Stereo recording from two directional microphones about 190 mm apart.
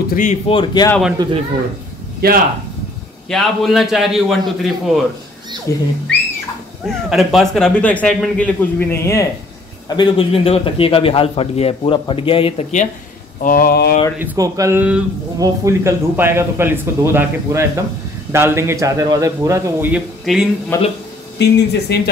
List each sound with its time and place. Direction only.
0.1 s speech: 40° left (ahead or behind)
0.5 s a man's voice: 25° left (ahead or behind)
1.2 s speech: 20° right (ahead or behind)
2.2 s speech: 55° right (ahead or behind)
3.3 s a man's voice: centre (ahead or behind)
5.7 s speech: 15° left (ahead or behind)
6.9 s speech: centre (ahead or behind)
9.8 s a man's voice: 25° left (ahead or behind)
13.4 s speech: 50° left (ahead or behind)
14.2 s speech: 15° right (ahead or behind)
20.7 s speech: 15° left (ahead or behind)
21.4 s speech: 60° left (ahead or behind)